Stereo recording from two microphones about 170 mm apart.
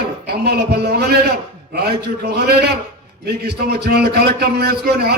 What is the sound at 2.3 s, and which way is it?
A man's voice, 70° right (ahead or behind).